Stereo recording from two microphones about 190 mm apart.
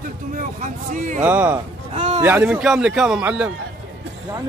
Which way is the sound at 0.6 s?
40° right (ahead or behind).